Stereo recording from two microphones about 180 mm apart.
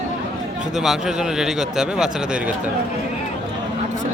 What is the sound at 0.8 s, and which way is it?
Speech, 5° right (ahead or behind).